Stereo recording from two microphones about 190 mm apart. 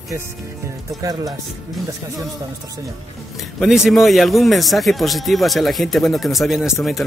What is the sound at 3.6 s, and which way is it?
Speech, centre (ahead or behind).